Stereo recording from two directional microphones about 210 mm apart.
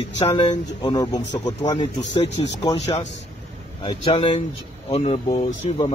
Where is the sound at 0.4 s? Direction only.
20° left (ahead or behind).